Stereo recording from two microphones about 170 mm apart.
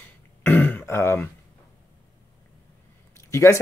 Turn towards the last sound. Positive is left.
turn(degrees=15)  # may be behind; listen again after turning